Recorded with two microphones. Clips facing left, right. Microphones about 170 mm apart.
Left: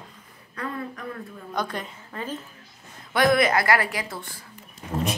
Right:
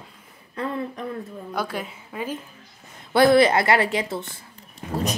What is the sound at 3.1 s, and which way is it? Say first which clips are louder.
A woman's voice: right 4 dB; 30° right (ahead or behind).